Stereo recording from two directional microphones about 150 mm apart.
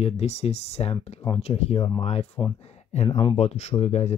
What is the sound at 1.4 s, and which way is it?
Speech, 45° left (ahead or behind).